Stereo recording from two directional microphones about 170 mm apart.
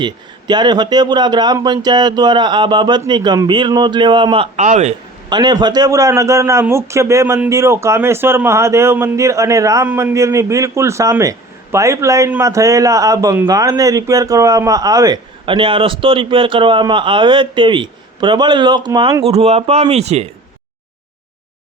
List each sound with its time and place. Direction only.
0.0 s a man's voice: 25° right (ahead or behind)
4.5 s speech: 45° right (ahead or behind)
5.3 s a man's voice: 25° right (ahead or behind)